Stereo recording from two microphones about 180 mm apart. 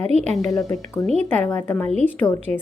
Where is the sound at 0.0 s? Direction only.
35° right (ahead or behind).